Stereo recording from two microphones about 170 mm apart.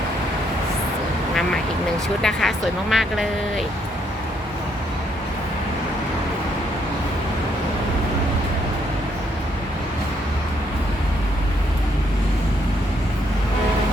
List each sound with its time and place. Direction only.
2.2 s speech: centre (ahead or behind)